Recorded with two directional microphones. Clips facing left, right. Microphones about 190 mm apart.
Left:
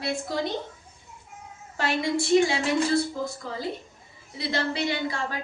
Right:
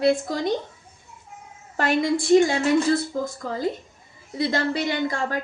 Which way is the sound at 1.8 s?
50° right (ahead or behind).